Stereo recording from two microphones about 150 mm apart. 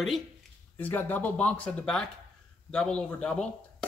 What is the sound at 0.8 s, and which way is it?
Speech, 10° left (ahead or behind).